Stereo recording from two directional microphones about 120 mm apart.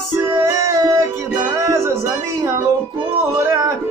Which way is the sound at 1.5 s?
25° right (ahead or behind).